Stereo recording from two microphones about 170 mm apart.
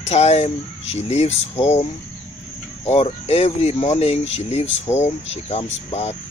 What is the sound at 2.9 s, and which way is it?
Speech, 40° left (ahead or behind).